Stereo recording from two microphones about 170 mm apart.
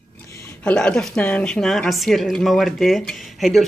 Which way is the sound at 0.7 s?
5° left (ahead or behind).